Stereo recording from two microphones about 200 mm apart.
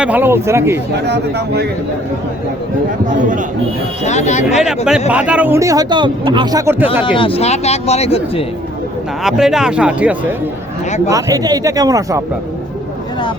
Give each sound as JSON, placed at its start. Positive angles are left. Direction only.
{"t": 0.0, "sound": "speech", "side_deg": -10}
{"t": 1.0, "sound": "speech", "side_deg": -55}
{"t": 4.0, "sound": "speech", "side_deg": 35}
{"t": 4.4, "sound": "speech", "side_deg": -5}
{"t": 7.0, "sound": "speech", "side_deg": 25}
{"t": 9.2, "sound": "speech", "side_deg": 0}
{"t": 11.1, "sound": "speech", "side_deg": -15}